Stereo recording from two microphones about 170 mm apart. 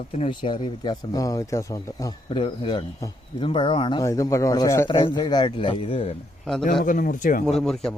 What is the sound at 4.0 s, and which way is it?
Speech, 20° left (ahead or behind).